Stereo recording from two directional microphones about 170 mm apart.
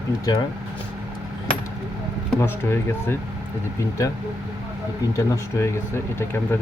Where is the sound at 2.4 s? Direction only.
15° left (ahead or behind).